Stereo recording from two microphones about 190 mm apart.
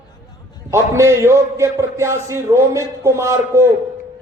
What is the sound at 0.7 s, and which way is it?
A man's voice, 15° right (ahead or behind).